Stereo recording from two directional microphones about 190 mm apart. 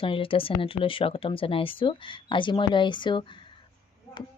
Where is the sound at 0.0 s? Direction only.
30° left (ahead or behind).